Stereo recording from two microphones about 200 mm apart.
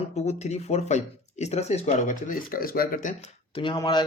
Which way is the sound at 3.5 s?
25° left (ahead or behind).